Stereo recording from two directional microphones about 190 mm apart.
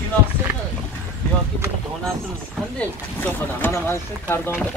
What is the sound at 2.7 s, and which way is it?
Speech, 10° left (ahead or behind).